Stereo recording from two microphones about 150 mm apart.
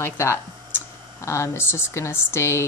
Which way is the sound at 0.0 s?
15° left (ahead or behind).